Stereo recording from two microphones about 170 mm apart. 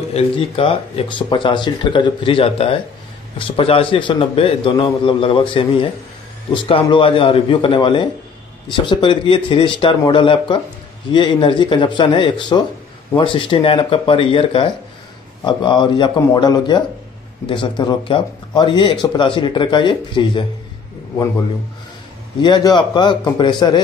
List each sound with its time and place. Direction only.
0.1 s speech: 35° left (ahead or behind)
22.4 s speech: 25° left (ahead or behind)